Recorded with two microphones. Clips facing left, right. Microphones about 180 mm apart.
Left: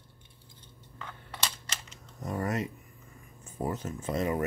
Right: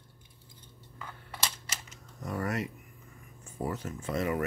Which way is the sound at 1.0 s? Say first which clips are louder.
Even; 5° right (ahead or behind).